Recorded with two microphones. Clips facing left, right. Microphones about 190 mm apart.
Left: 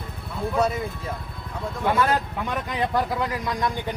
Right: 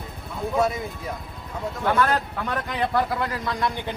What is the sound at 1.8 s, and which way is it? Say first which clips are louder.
Speech: even; 15° left (ahead or behind).